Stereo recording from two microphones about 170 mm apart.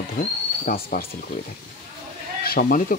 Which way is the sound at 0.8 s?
60° left (ahead or behind).